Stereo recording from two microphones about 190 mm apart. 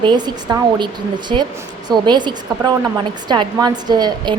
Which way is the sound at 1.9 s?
25° right (ahead or behind).